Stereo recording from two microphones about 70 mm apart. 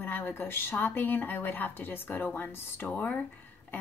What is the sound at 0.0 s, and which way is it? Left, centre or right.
A woman's voice, left.